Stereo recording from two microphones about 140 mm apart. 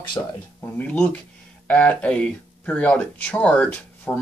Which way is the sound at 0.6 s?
10° left (ahead or behind).